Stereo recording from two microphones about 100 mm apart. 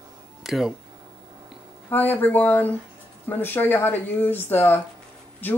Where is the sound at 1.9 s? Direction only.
20° left (ahead or behind).